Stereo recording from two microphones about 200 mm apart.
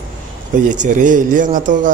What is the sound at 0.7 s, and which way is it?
A man's voice, 40° right (ahead or behind).